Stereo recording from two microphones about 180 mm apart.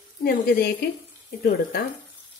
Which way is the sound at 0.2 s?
60° left (ahead or behind).